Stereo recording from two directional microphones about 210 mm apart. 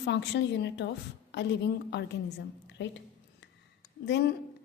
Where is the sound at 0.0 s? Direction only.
55° left (ahead or behind).